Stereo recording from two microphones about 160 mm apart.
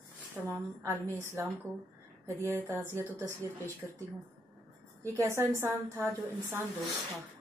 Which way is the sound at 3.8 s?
10° right (ahead or behind).